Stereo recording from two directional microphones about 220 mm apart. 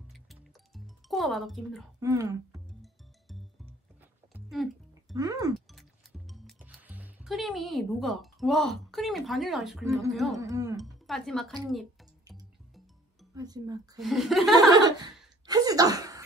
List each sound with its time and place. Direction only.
0.1 s music: centre (ahead or behind)
2.0 s speech: 15° right (ahead or behind)
2.8 s music: centre (ahead or behind)
5.1 s speech: 15° right (ahead or behind)
5.7 s music: centre (ahead or behind)
10.1 s speech: centre (ahead or behind)
10.4 s speech: 15° right (ahead or behind)
10.8 s speech: centre (ahead or behind)
12.3 s music: centre (ahead or behind)
13.3 s speech: 15° right (ahead or behind)
13.9 s speech: centre (ahead or behind)
14.7 s speech: 20° right (ahead or behind)
15.4 s a sound: 15° right (ahead or behind)